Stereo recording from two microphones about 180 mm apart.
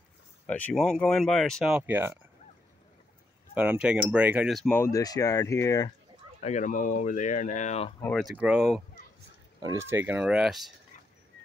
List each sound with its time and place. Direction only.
0.5 s speech: 10° left (ahead or behind); by 2.1 s 10° right (ahead or behind)
3.5 s speech: 5° right (ahead or behind)
4.6 s speech: 10° left (ahead or behind)
6.4 s speech: 45° left (ahead or behind)
8.0 s speech: centre (ahead or behind)
9.6 s speech: 15° right (ahead or behind); by 10.7 s centre (ahead or behind)